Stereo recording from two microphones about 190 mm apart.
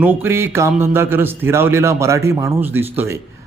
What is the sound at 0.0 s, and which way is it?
Speech, 10° right (ahead or behind).